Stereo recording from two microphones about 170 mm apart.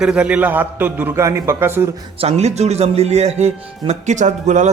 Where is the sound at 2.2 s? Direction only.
40° right (ahead or behind).